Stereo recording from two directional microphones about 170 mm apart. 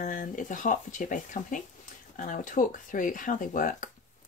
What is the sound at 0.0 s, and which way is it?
Speech, 50° left (ahead or behind).